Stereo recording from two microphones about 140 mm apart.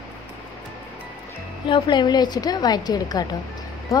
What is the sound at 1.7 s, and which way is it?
Speech, 30° left (ahead or behind).